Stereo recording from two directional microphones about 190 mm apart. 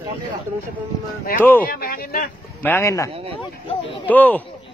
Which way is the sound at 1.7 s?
50° left (ahead or behind).